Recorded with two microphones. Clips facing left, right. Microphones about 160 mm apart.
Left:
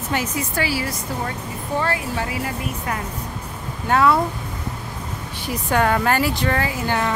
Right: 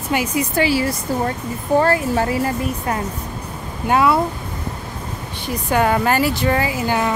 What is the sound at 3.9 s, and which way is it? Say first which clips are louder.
Speech: right 1 dB; 15° right (ahead or behind).